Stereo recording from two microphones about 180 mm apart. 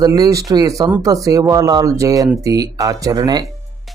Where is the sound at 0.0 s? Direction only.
20° right (ahead or behind).